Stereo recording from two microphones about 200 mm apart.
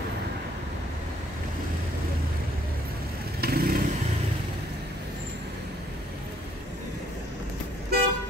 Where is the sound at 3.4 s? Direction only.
50° right (ahead or behind).